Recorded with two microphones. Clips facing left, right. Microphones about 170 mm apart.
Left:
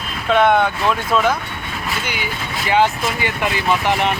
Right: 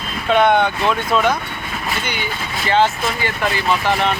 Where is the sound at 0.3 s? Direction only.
Centre (ahead or behind).